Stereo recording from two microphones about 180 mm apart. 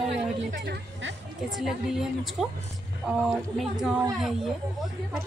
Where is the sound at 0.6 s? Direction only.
65° right (ahead or behind).